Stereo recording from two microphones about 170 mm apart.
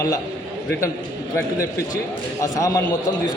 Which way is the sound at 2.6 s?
20° left (ahead or behind).